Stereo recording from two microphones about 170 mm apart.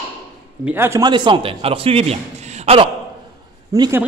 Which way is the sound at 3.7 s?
20° right (ahead or behind).